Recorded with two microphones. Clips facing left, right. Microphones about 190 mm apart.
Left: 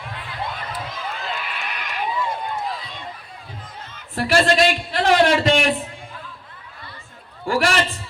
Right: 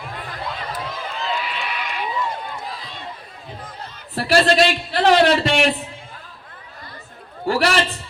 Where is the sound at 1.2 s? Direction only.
50° left (ahead or behind).